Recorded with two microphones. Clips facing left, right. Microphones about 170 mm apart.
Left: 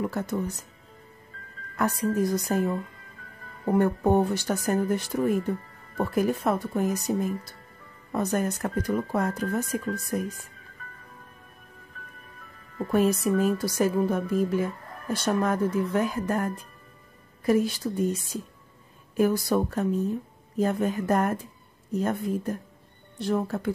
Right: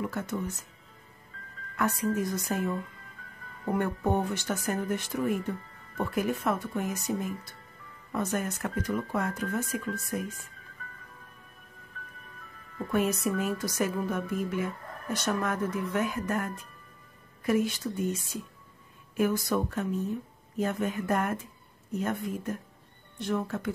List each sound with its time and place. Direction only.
0.0 s a woman's voice: 35° left (ahead or behind)
1.8 s a woman's voice: 35° left (ahead or behind)
12.7 s a woman's voice: 35° left (ahead or behind)